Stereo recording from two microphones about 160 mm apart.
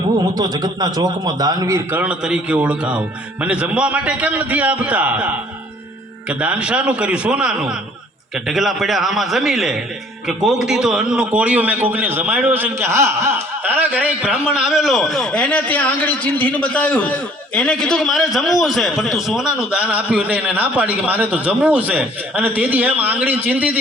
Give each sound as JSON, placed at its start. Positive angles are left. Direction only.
{"t": 0.3, "sound": "a man's voice", "side_deg": -25}